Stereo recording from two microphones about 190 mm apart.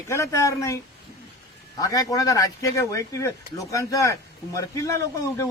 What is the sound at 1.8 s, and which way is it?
Speech, 20° left (ahead or behind).